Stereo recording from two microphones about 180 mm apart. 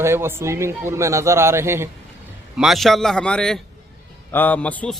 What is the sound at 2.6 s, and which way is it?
A man's voice, centre (ahead or behind).